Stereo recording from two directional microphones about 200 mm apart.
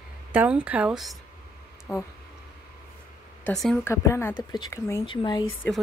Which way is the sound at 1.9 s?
10° left (ahead or behind).